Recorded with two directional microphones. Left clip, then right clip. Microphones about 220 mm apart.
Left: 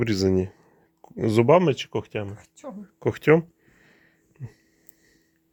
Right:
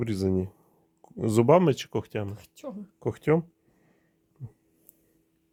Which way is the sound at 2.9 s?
5° left (ahead or behind).